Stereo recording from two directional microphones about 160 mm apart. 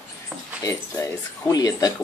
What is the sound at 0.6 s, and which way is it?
Speech, 20° left (ahead or behind).